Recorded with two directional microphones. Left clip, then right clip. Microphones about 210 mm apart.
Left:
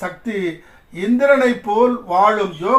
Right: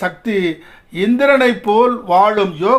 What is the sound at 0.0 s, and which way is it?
A man's voice, 45° right (ahead or behind).